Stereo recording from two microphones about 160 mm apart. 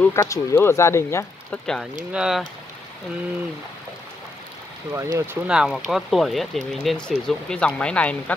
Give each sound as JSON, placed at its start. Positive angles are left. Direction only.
{"t": 0.0, "sound": "speech", "side_deg": 20}
{"t": 2.1, "sound": "speech", "side_deg": -5}
{"t": 4.9, "sound": "speech", "side_deg": -20}